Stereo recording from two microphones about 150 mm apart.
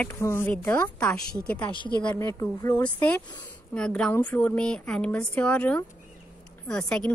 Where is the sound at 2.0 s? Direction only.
20° left (ahead or behind).